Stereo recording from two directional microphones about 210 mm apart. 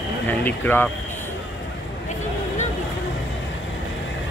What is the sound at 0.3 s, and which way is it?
Speech, 10° left (ahead or behind).